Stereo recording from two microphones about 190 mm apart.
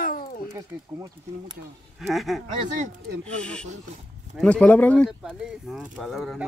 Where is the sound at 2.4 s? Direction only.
40° right (ahead or behind).